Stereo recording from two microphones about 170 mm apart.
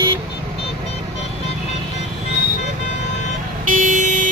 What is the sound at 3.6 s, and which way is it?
Vehicle, 50° right (ahead or behind).